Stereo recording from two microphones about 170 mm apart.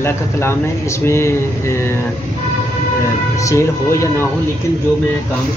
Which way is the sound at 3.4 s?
15° left (ahead or behind).